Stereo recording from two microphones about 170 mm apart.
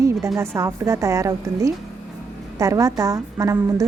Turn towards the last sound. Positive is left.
turn(degrees=-20)  # may be behind; listen again after turning